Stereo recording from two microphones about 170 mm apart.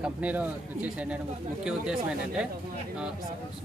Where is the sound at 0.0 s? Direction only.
10° right (ahead or behind).